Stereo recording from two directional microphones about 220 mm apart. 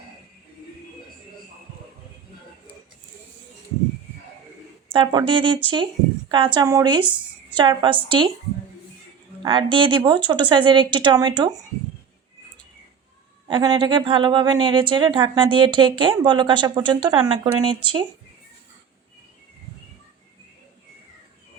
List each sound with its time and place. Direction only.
4.9 s speech: 20° right (ahead or behind)
9.4 s speech: 20° right (ahead or behind)
13.5 s speech: 20° right (ahead or behind)